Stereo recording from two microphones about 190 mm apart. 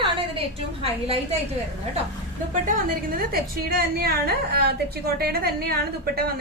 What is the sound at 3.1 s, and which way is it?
A woman's voice, 55° right (ahead or behind).